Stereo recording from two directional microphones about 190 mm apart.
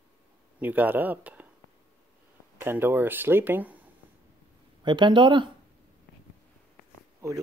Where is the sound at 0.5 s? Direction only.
10° right (ahead or behind).